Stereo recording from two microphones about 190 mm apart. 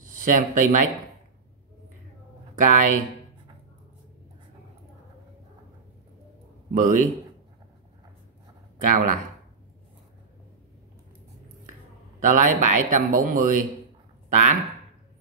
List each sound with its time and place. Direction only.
0.0 s speech: 45° right (ahead or behind)
2.5 s speech: 45° right (ahead or behind)
6.7 s a man's voice: 45° right (ahead or behind)
8.8 s a man's voice: 45° right (ahead or behind)
12.2 s a man's voice: 45° right (ahead or behind)